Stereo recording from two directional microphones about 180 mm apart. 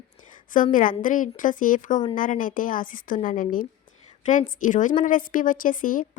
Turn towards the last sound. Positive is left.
turn(degrees=50)  # may be behind; listen again after turning